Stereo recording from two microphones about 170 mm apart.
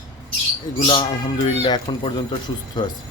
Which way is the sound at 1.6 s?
30° left (ahead or behind).